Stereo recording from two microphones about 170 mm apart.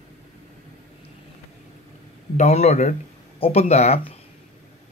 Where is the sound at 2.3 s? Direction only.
40° left (ahead or behind).